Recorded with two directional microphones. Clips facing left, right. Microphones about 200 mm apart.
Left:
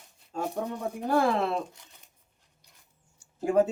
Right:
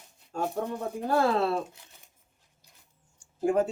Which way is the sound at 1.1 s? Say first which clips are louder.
Even; 15° left (ahead or behind).